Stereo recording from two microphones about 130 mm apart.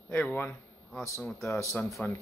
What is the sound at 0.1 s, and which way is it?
Speech, 15° left (ahead or behind).